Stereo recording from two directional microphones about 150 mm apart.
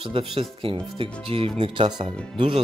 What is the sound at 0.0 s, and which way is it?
Speech, 35° right (ahead or behind).